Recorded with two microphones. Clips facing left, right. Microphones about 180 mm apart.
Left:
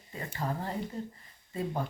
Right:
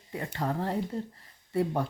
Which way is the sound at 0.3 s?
70° right (ahead or behind).